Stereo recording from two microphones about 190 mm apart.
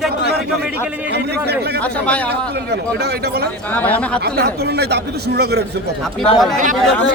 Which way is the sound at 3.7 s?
10° left (ahead or behind).